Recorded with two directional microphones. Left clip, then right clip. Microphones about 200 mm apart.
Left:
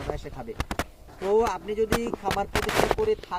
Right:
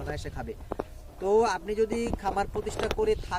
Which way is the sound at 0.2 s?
5° right (ahead or behind).